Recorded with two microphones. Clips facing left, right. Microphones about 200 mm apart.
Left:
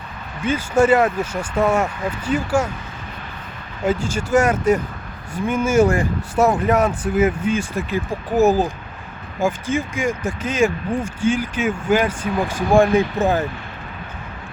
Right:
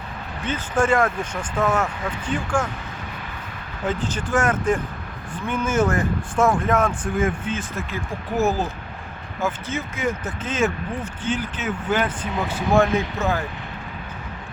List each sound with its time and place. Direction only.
0.4 s speech: 10° left (ahead or behind)
3.8 s speech: 10° left (ahead or behind)